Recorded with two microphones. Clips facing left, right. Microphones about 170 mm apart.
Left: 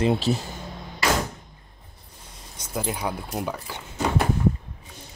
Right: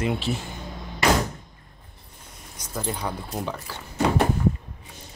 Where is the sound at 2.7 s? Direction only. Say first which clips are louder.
Left 1 dB; 5° left (ahead or behind).